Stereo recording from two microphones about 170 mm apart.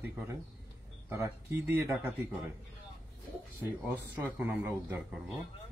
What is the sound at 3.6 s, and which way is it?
Speech, 10° right (ahead or behind).